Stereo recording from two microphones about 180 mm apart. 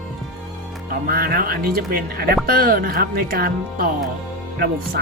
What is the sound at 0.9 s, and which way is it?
Speech, 55° right (ahead or behind).